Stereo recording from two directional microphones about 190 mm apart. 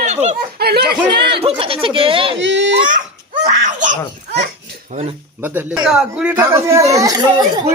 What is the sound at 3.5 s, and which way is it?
Speech, 40° right (ahead or behind).